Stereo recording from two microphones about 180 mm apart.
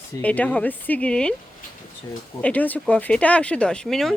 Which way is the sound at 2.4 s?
10° left (ahead or behind).